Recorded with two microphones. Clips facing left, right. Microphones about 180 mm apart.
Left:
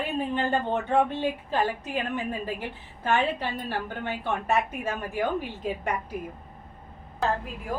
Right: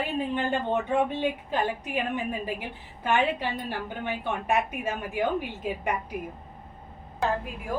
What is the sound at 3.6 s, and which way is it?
A woman's voice, 15° right (ahead or behind).